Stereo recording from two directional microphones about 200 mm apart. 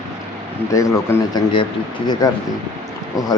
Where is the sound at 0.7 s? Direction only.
15° left (ahead or behind).